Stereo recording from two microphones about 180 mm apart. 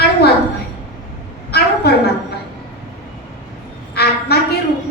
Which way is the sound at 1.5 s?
60° left (ahead or behind).